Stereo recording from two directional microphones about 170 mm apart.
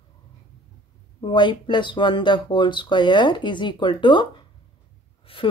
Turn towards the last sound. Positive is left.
turn(degrees=30)  # may be behind; listen again after turning